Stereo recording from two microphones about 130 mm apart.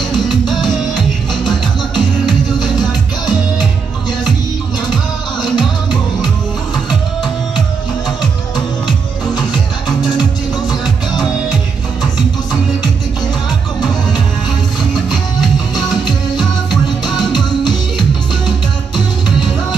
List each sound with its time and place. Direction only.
0.2 s music: 35° left (ahead or behind)
0.7 s music: 5° left (ahead or behind)
2.0 s music: 35° left (ahead or behind)
5.4 s music: 35° left (ahead or behind)
8.5 s music: 35° left (ahead or behind)
15.7 s music: 30° left (ahead or behind)
17.0 s music: 35° left (ahead or behind)